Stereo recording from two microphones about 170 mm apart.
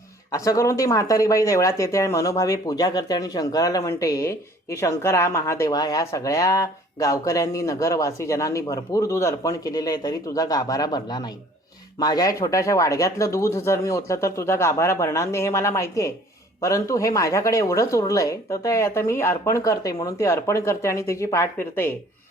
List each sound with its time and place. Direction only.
0.3 s speech: 20° left (ahead or behind)